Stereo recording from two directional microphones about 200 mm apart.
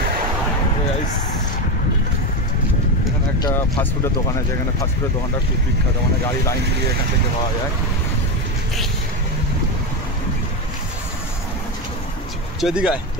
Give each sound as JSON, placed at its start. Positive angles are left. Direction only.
{"t": 3.4, "sound": "speech", "side_deg": 15}
{"t": 12.5, "sound": "speech", "side_deg": -5}